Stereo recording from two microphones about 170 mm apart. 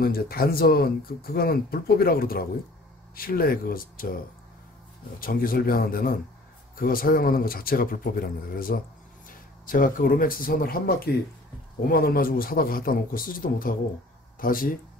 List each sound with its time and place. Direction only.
0.0 s speech: 65° left (ahead or behind)
5.2 s speech: 60° left (ahead or behind)